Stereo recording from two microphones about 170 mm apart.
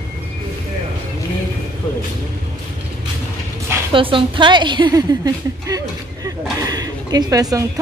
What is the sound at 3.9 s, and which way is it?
A woman's voice, 30° right (ahead or behind).